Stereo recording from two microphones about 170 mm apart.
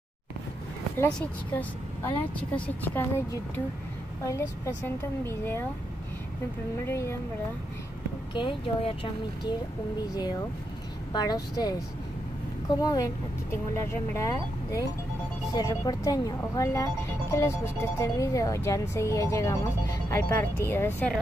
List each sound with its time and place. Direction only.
1.6 s speech: 10° left (ahead or behind)
6.9 s speech: 15° left (ahead or behind)
8.4 s speech: 30° left (ahead or behind)
11.1 s speech: 25° left (ahead or behind)